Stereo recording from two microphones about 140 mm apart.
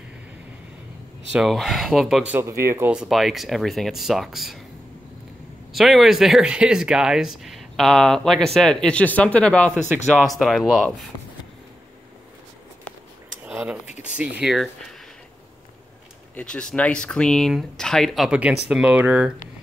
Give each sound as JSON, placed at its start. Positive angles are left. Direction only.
{"t": 1.3, "sound": "speech", "side_deg": 0}
{"t": 2.3, "sound": "speech", "side_deg": -20}
{"t": 2.9, "sound": "speech", "side_deg": -5}
{"t": 5.7, "sound": "speech", "side_deg": 0}
{"t": 13.5, "sound": "a sound", "side_deg": -5}
{"t": 14.1, "sound": "speech", "side_deg": -10}
{"t": 16.3, "sound": "speech", "side_deg": 5}